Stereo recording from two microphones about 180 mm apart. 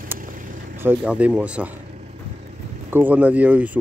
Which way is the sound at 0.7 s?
10° right (ahead or behind).